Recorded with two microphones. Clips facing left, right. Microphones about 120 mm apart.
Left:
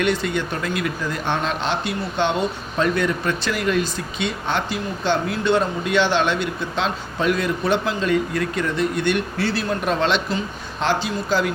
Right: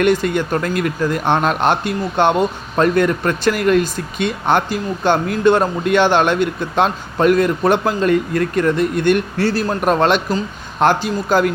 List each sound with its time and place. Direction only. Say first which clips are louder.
0.0 s speech: right 6 dB; 50° right (ahead or behind)